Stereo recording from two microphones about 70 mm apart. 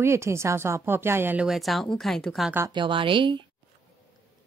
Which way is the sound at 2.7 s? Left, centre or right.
Right.